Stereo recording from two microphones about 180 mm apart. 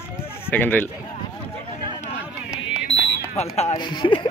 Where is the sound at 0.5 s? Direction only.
10° left (ahead or behind).